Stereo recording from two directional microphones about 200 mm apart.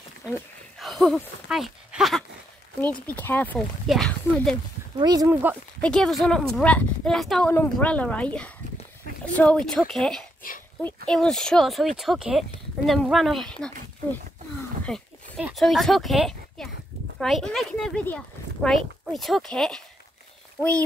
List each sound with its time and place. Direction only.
0.7 s speech: centre (ahead or behind)
4.9 s speech: 20° right (ahead or behind)
5.8 s speech: 5° left (ahead or behind)
14.9 s a sound: 5° left (ahead or behind)
15.4 s speech: centre (ahead or behind)